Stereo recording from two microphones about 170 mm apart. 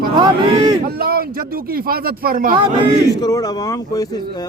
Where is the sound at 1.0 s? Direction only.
65° right (ahead or behind).